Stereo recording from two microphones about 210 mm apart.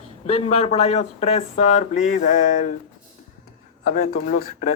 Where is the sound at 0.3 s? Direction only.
30° left (ahead or behind).